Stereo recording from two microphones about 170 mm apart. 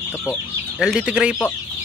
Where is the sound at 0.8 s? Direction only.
5° right (ahead or behind).